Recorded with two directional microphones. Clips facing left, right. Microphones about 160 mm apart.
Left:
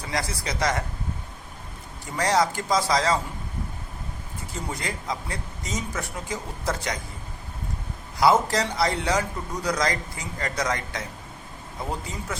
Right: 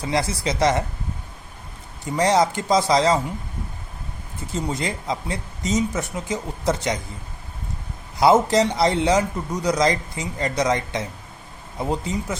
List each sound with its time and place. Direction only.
0.1 s a man's voice: 25° right (ahead or behind)
2.0 s a man's voice: 20° right (ahead or behind)
4.7 s a man's voice: 20° right (ahead or behind)
8.2 s a man's voice: 20° right (ahead or behind)